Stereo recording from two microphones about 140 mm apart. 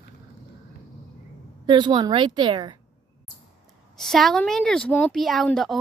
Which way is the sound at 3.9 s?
Centre (ahead or behind).